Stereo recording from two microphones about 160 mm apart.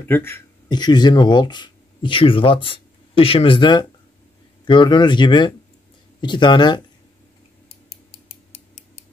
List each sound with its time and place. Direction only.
0.0 s speech: 15° left (ahead or behind)
0.7 s speech: 25° left (ahead or behind)